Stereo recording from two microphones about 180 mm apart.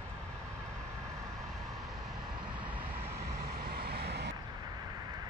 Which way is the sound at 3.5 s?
60° right (ahead or behind).